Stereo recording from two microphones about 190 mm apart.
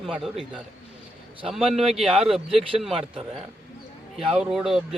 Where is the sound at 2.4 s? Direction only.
30° right (ahead or behind).